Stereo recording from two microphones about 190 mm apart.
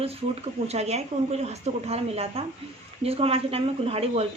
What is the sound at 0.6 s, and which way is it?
A woman's voice, 35° right (ahead or behind).